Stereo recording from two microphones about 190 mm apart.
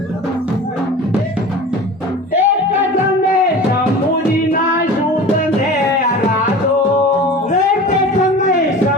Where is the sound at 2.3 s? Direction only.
10° right (ahead or behind).